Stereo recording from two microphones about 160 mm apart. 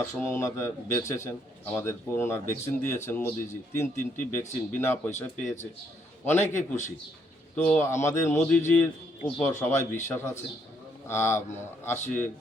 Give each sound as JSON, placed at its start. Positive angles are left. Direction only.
{"t": 0.0, "sound": "a man's voice", "side_deg": 20}